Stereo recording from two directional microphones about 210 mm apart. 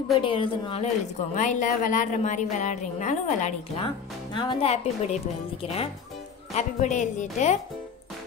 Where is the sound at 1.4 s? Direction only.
35° left (ahead or behind).